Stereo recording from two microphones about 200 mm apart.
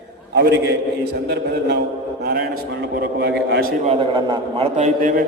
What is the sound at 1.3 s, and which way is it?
Speech, 55° right (ahead or behind).